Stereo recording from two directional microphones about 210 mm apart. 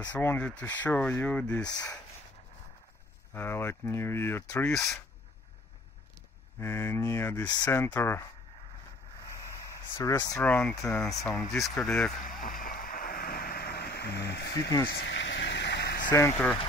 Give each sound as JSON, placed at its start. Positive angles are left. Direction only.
{"t": 0.1, "sound": "speech", "side_deg": 10}
{"t": 1.7, "sound": "speech", "side_deg": 20}
{"t": 3.3, "sound": "speech", "side_deg": 10}
{"t": 6.6, "sound": "speech", "side_deg": 10}
{"t": 9.9, "sound": "speech", "side_deg": 15}
{"t": 10.4, "sound": "speech", "side_deg": 5}
{"t": 12.2, "sound": "vehicle", "side_deg": 40}
{"t": 14.9, "sound": "a sound", "side_deg": 60}
{"t": 16.1, "sound": "speech", "side_deg": 15}